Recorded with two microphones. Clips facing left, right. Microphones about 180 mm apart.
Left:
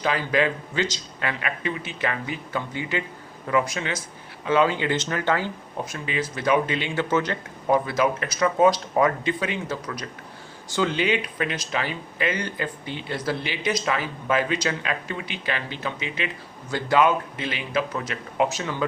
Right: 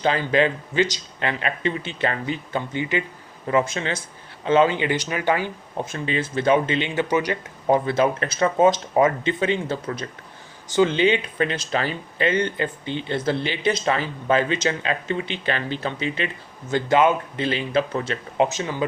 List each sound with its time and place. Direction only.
0.0 s speech: 25° right (ahead or behind)
7.7 s speech: 25° right (ahead or behind)
16.6 s speech: 20° right (ahead or behind)